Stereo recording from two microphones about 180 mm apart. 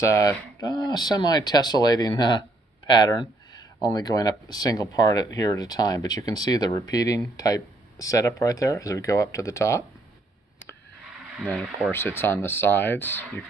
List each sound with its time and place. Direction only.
0.0 s speech: 15° left (ahead or behind)
11.3 s speech: centre (ahead or behind)
11.9 s speech: 10° left (ahead or behind)